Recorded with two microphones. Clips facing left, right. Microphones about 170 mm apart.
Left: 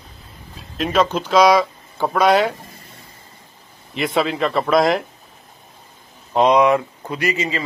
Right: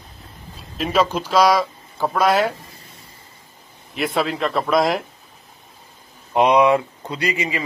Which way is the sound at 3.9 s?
Centre (ahead or behind).